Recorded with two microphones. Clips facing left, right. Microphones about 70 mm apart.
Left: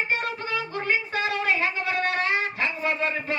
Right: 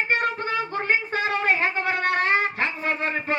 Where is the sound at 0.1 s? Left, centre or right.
Right.